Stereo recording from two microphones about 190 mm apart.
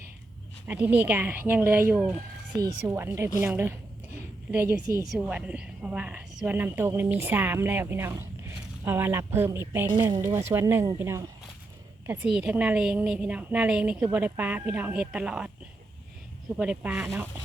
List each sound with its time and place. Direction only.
0.7 s a woman's voice: 10° right (ahead or behind)
5.0 s a woman's voice: 5° right (ahead or behind)
16.6 s speech: 5° right (ahead or behind)